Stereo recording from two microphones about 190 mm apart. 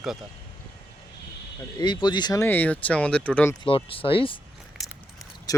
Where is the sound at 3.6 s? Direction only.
30° left (ahead or behind).